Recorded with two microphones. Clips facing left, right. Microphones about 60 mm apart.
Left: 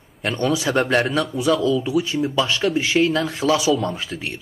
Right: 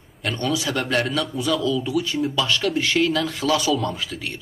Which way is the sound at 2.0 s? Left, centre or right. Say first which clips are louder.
Left 2 dB; left.